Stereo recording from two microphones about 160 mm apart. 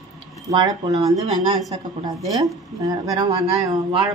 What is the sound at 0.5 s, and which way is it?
Speech, 25° right (ahead or behind).